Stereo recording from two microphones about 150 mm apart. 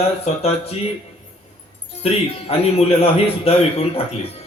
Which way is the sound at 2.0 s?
40° left (ahead or behind).